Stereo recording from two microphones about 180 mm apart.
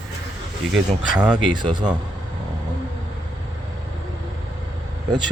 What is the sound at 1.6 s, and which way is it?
Speech, 25° right (ahead or behind).